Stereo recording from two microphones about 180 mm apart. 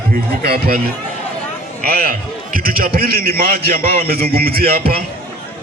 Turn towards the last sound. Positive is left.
turn(degrees=-55)  # may be behind; listen again after turning